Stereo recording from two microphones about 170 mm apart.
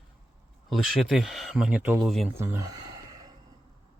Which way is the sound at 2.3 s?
20° right (ahead or behind).